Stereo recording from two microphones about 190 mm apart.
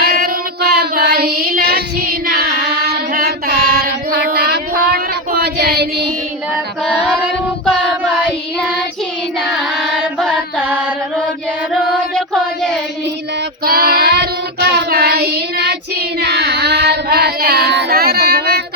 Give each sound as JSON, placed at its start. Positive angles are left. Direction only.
{"t": 0.0, "sound": "child singing", "side_deg": -55}
{"t": 6.8, "sound": "singing", "side_deg": 5}
{"t": 9.5, "sound": "carnatic music", "side_deg": 0}
{"t": 12.1, "sound": "a sound", "side_deg": 5}
{"t": 13.7, "sound": "child singing", "side_deg": -55}